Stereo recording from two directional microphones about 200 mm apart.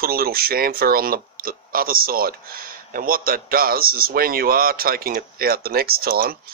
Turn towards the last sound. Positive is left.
turn(degrees=-45)  # may be behind; listen again after turning